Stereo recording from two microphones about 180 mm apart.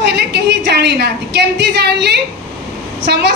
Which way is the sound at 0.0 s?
65° right (ahead or behind).